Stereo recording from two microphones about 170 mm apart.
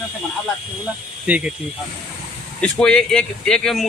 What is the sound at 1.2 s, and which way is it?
Speech, 5° right (ahead or behind).